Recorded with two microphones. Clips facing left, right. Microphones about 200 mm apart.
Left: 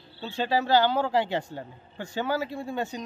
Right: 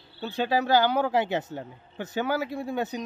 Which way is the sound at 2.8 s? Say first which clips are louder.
Right 2 dB; 20° right (ahead or behind).